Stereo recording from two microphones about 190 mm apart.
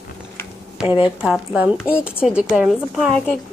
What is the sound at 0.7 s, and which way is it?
A woman's voice, 5° right (ahead or behind).